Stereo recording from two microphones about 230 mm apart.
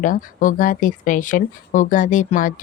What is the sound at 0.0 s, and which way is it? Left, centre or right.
Speech, left.